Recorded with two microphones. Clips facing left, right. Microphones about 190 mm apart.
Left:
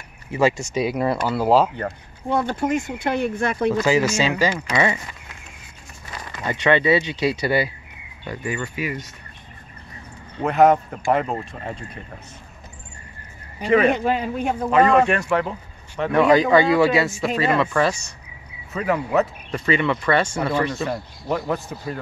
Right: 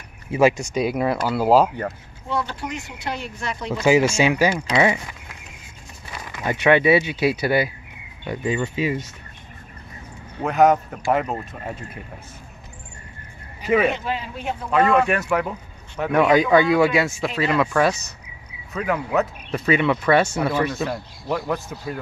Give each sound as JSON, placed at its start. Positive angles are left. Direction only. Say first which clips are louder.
{"t": 0.3, "sound": "speech", "louder": "right 2 dB", "side_deg": -15}
{"t": 0.6, "sound": "speech", "louder": "even", "side_deg": 0}
{"t": 2.2, "sound": "speech", "louder": "left 5 dB", "side_deg": 50}
{"t": 4.2, "sound": "speech", "louder": "right 2 dB", "side_deg": -10}
{"t": 6.1, "sound": "speech", "louder": "right 2 dB", "side_deg": -5}
{"t": 8.3, "sound": "speech", "louder": "right 4 dB", "side_deg": -20}
{"t": 10.4, "sound": "speech", "louder": "left 1 dB", "side_deg": 0}
{"t": 13.8, "sound": "speech", "louder": "left 4 dB", "side_deg": 45}
{"t": 14.7, "sound": "speech", "louder": "left 1 dB", "side_deg": 0}